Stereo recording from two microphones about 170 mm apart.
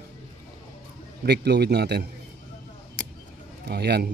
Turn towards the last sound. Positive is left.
turn(degrees=-70)  # may be behind; listen again after turning